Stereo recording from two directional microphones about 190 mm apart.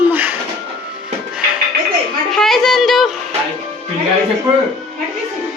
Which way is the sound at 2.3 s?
Centre (ahead or behind).